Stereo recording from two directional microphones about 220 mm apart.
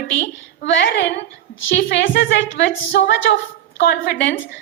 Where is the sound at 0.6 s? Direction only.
50° left (ahead or behind).